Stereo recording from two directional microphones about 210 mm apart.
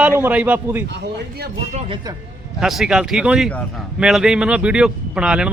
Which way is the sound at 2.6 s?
Centre (ahead or behind).